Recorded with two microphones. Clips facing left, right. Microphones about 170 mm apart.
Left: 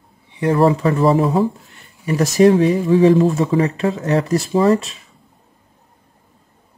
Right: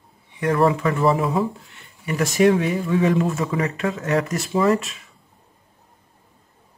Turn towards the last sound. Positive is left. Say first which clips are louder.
# left 4 dB
turn(degrees=30)  # may be behind; listen again after turning